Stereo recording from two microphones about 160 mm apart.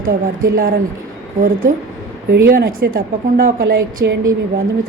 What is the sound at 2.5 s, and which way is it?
Speech, 65° right (ahead or behind).